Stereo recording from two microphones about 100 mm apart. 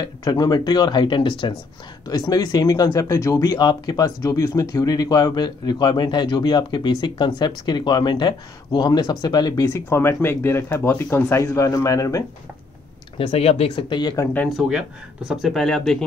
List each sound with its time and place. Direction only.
0.2 s a man's voice: 40° left (ahead or behind)
2.0 s speech: 40° left (ahead or behind)
3.5 s a man's voice: 45° left (ahead or behind)
4.2 s a man's voice: 30° left (ahead or behind)
9.7 s speech: 25° left (ahead or behind)
13.2 s speech: 85° left
13.8 s a man's voice: 50° left (ahead or behind)
14.7 s speech: 5° right (ahead or behind)